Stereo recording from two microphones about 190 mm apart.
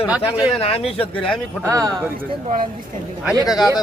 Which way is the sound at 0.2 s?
30° left (ahead or behind).